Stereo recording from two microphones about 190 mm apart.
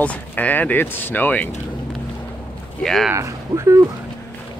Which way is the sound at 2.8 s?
5° left (ahead or behind).